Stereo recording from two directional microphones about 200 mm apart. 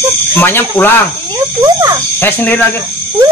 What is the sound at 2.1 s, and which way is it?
Speech, 10° left (ahead or behind).